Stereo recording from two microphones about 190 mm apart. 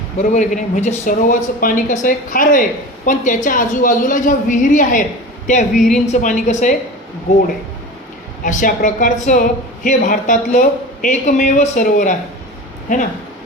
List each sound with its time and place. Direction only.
0.2 s a woman's voice: 40° left (ahead or behind)
5.7 s a woman's voice: centre (ahead or behind)
6.1 s a woman's voice: 40° left (ahead or behind)
8.4 s a woman's voice: 45° left (ahead or behind)